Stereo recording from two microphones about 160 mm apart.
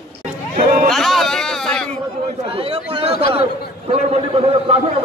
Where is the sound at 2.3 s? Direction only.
40° right (ahead or behind).